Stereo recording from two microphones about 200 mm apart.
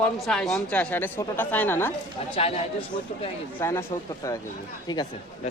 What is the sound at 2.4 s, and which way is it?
Speech, 30° left (ahead or behind).